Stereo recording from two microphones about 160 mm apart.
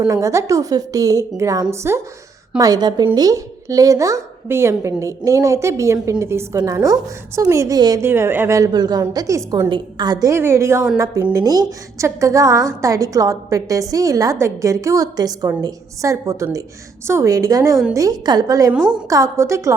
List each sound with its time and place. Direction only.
0.1 s a woman's voice: 20° right (ahead or behind)